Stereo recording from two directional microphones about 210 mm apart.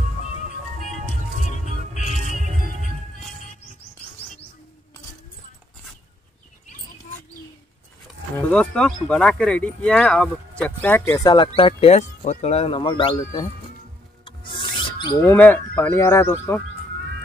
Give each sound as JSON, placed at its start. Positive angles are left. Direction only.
{"t": 1.5, "sound": "music", "side_deg": 35}
{"t": 8.4, "sound": "speech", "side_deg": 5}
{"t": 11.2, "sound": "speech", "side_deg": 25}
{"t": 14.2, "sound": "a sound", "side_deg": 25}
{"t": 15.2, "sound": "speech", "side_deg": 10}